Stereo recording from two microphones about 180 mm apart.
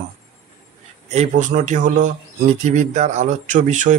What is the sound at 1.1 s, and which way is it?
Speech, 40° right (ahead or behind).